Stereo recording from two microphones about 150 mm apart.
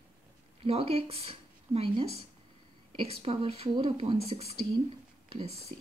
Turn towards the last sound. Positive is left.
turn(degrees=-45)  # may be behind; listen again after turning